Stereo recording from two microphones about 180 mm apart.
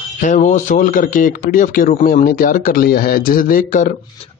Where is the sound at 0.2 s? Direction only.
45° left (ahead or behind).